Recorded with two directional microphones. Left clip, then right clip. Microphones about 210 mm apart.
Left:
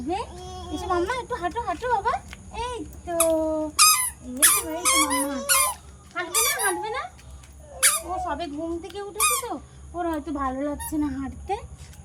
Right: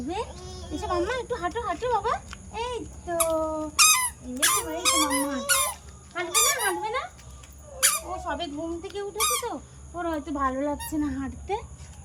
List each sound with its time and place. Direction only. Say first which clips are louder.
0.1 s speech: left 5 dB; 10° left (ahead or behind)